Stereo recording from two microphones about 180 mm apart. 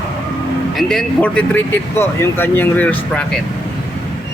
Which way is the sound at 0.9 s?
5° left (ahead or behind).